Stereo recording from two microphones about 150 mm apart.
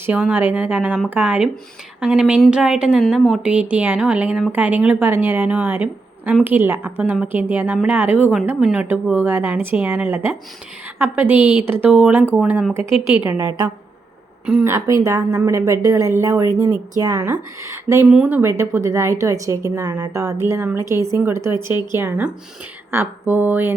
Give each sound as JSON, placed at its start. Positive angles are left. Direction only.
{"t": 0.0, "sound": "a woman's voice", "side_deg": -10}
{"t": 13.3, "sound": "a woman's voice", "side_deg": -25}